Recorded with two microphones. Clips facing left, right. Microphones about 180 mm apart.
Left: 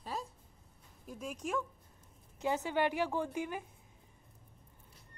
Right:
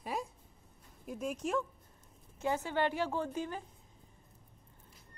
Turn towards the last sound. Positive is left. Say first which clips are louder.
# even
turn(degrees=15)  # may be behind; listen again after turning